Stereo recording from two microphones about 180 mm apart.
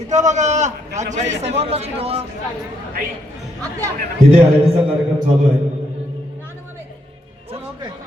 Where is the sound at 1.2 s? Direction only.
80° right.